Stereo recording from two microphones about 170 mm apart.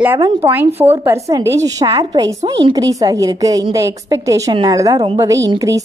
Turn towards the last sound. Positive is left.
turn(degrees=-20)  # may be behind; listen again after turning